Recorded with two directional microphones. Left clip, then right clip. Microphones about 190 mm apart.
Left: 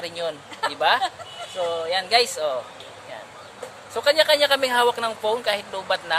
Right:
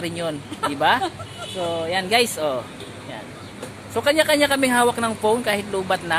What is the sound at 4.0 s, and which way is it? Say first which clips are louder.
Speech: even; 15° right (ahead or behind).